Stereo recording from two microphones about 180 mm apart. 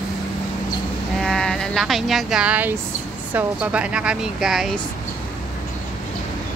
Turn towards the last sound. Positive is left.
turn(degrees=0)  # may be behind; listen again after turning